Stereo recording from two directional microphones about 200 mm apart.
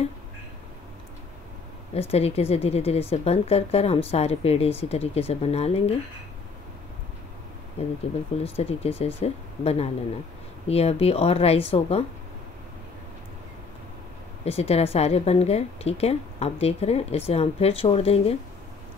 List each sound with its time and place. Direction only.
2.0 s speech: 30° left (ahead or behind)
7.8 s speech: 30° left (ahead or behind)
14.4 s speech: 30° left (ahead or behind)